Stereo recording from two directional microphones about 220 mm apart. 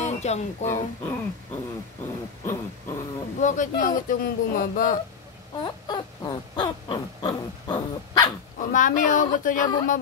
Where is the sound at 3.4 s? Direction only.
35° left (ahead or behind).